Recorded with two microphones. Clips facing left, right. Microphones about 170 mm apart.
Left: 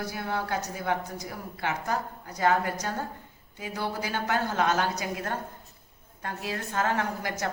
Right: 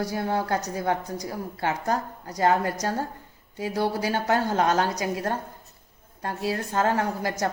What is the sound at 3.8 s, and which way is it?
A woman's voice, 40° right (ahead or behind).